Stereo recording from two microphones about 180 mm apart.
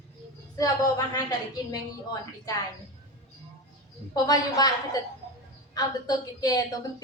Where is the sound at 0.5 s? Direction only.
20° left (ahead or behind).